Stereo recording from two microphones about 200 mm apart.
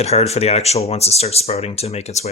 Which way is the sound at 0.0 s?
30° left (ahead or behind).